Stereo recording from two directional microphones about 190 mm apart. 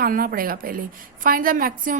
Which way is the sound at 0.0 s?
50° right (ahead or behind).